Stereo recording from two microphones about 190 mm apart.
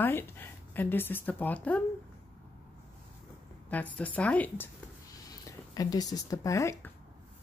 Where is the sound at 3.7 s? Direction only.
10° left (ahead or behind).